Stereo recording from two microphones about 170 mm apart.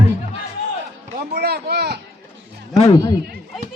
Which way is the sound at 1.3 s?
70° right (ahead or behind).